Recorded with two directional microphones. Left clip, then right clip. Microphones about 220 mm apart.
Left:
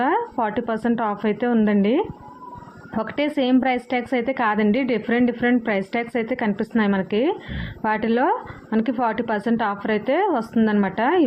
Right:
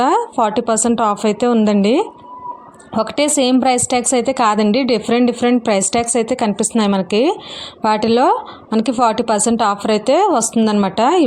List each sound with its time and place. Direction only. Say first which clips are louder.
0.0 s a woman's voice: right 7 dB; 50° right (ahead or behind)
3.2 s a woman's voice: right 5 dB; 55° right (ahead or behind)